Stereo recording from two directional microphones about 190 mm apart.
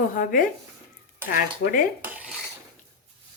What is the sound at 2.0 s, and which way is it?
Cutlery, 10° right (ahead or behind).